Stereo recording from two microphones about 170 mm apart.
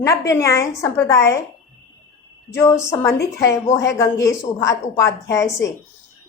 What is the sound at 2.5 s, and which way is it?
A woman's voice, 15° left (ahead or behind).